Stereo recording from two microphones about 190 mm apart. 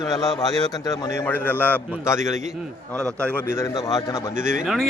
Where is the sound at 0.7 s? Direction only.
20° left (ahead or behind).